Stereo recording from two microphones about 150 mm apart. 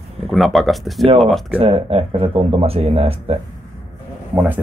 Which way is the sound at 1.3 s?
40° right (ahead or behind).